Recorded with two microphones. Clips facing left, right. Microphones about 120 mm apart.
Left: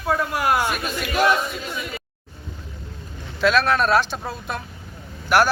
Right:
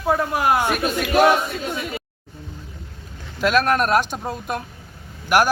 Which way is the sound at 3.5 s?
45° right (ahead or behind).